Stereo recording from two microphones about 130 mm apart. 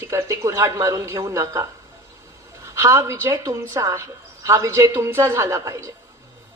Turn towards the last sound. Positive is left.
turn(degrees=-25)  # may be behind; listen again after turning